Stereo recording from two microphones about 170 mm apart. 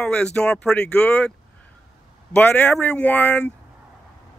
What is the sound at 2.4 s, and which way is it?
Speech, 10° left (ahead or behind).